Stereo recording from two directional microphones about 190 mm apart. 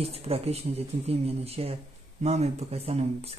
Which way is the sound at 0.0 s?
30° right (ahead or behind).